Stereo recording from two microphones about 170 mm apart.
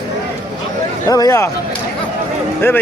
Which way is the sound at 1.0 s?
20° left (ahead or behind).